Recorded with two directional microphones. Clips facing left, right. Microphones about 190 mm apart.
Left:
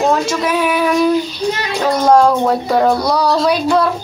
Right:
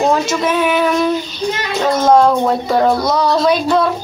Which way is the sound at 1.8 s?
5° right (ahead or behind).